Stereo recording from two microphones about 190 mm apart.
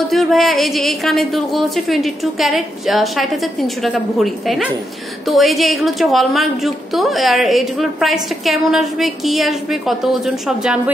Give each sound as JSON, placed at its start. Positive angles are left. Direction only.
{"t": 0.1, "sound": "a woman's voice", "side_deg": 0}